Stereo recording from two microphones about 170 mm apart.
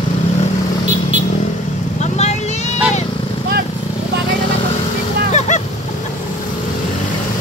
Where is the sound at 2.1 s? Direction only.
40° left (ahead or behind).